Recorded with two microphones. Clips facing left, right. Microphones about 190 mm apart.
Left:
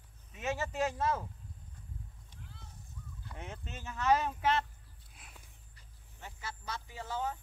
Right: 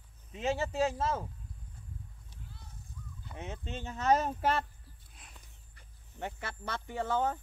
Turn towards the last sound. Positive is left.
turn(degrees=-55)  # may be behind; listen again after turning